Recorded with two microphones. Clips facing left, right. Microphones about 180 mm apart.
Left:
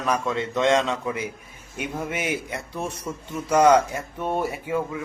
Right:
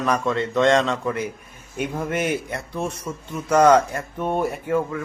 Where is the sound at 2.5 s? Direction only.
10° left (ahead or behind).